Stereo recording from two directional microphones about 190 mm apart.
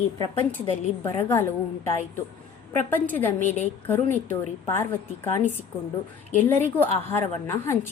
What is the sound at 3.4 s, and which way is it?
Speech, 35° left (ahead or behind).